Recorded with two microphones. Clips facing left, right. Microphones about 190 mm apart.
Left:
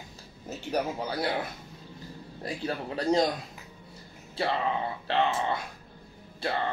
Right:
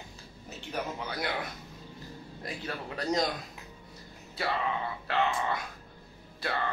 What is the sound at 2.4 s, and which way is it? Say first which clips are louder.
Speech: left 5 dB; 30° left (ahead or behind).